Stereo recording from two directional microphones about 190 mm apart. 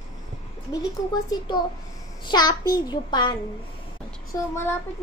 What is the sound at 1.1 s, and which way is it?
A child's voice, 20° left (ahead or behind).